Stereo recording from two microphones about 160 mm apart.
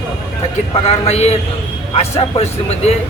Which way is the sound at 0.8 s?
40° left (ahead or behind).